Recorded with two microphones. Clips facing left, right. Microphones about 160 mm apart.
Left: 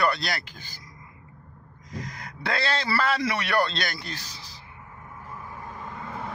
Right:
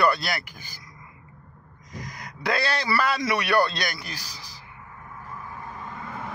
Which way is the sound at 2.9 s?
25° left (ahead or behind).